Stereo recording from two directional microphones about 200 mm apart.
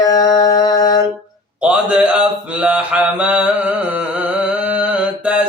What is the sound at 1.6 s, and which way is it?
Mantra, 5° right (ahead or behind).